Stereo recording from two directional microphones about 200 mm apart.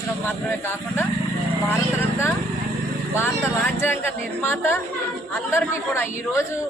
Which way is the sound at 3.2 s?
10° left (ahead or behind).